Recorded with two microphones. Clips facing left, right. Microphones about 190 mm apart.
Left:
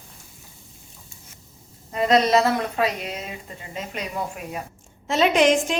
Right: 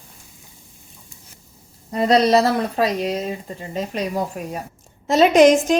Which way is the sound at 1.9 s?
35° right (ahead or behind).